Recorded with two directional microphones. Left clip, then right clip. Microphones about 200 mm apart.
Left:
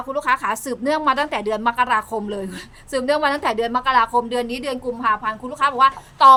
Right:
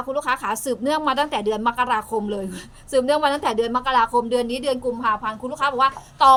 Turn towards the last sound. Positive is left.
turn(degrees=20)  # may be behind; listen again after turning